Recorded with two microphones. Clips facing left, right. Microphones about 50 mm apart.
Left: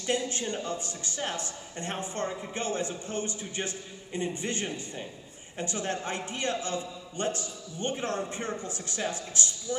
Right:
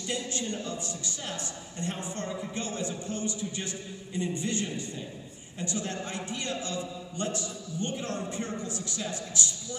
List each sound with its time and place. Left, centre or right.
0.0 s a man's voice: left